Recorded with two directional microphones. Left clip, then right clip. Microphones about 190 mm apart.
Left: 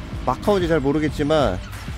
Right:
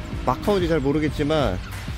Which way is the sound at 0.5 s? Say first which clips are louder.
Left 3 dB; 20° left (ahead or behind).